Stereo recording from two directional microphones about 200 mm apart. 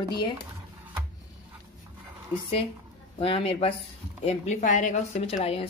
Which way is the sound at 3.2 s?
30° left (ahead or behind).